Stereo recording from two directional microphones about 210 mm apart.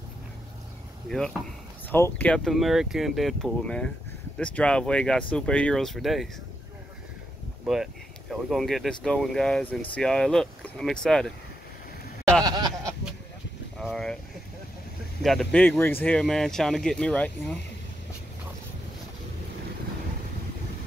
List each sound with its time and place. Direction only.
1.0 s speech: 5° left (ahead or behind)
7.6 s speech: centre (ahead or behind)
12.4 s a sound: 20° right (ahead or behind)
13.7 s vehicle: centre (ahead or behind)
15.2 s speech: 5° left (ahead or behind)